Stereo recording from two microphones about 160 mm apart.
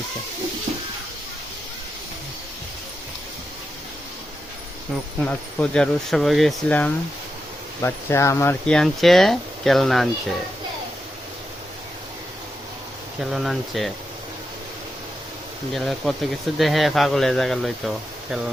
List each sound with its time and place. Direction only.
5.2 s speech: 10° left (ahead or behind)
8.6 s speech: 5° left (ahead or behind)
13.1 s speech: centre (ahead or behind)
15.7 s speech: centre (ahead or behind)